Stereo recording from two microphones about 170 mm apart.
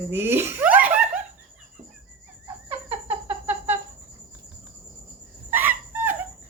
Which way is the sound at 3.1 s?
15° right (ahead or behind).